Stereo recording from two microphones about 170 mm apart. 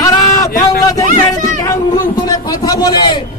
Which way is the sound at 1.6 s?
20° left (ahead or behind).